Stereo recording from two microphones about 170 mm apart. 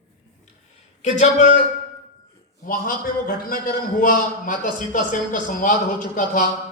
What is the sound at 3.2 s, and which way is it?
A man's voice, 55° left (ahead or behind).